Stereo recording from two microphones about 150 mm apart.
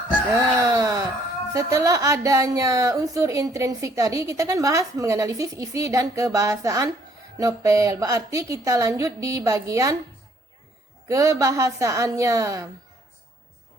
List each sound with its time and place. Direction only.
0.3 s a sound: 20° right (ahead or behind)
1.5 s speech: 20° right (ahead or behind)
11.1 s speech: 20° right (ahead or behind)